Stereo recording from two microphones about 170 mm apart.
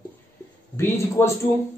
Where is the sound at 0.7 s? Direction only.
15° left (ahead or behind).